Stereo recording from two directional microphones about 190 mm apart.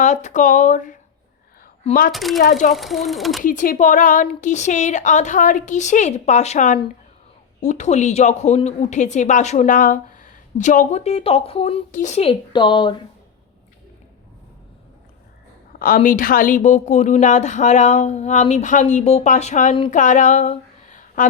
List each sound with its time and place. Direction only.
0.0 s a woman's voice: 40° left (ahead or behind)
2.1 s speech: centre (ahead or behind)
3.4 s a woman's voice: 45° left (ahead or behind)
11.9 s speech: 40° left (ahead or behind); by 13.0 s 25° left (ahead or behind)
16.0 s a woman's voice: 45° left (ahead or behind)